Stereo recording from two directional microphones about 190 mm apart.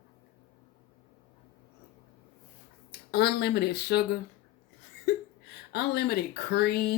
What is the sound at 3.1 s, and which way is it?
Speech, 60° left (ahead or behind).